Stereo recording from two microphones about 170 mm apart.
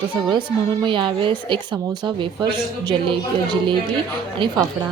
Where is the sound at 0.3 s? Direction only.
25° right (ahead or behind).